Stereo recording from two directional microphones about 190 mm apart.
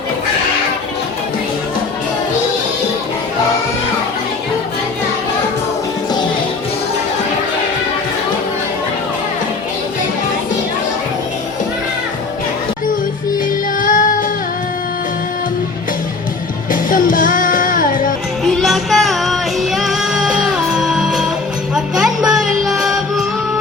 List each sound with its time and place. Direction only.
13.7 s music: 45° left (ahead or behind)
16.9 s music: 45° left (ahead or behind)
18.6 s music: centre (ahead or behind)